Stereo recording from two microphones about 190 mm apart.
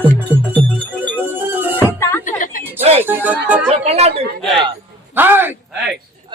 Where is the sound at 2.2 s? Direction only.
45° left (ahead or behind).